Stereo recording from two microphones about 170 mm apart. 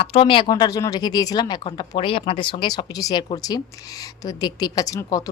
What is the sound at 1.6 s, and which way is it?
Speech, 35° left (ahead or behind).